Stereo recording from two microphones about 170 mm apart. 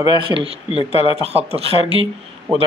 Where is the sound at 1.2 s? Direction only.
40° right (ahead or behind).